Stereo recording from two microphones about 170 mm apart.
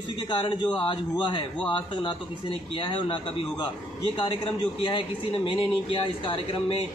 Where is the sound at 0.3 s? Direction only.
30° left (ahead or behind).